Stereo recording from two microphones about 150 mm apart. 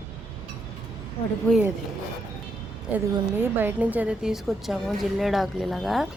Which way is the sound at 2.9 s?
15° right (ahead or behind).